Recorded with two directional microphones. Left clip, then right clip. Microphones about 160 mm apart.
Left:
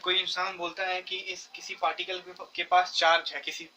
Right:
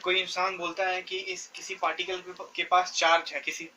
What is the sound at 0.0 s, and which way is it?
Speech, 50° left (ahead or behind).